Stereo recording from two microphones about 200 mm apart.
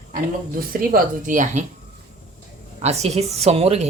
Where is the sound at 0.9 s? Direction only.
45° right (ahead or behind).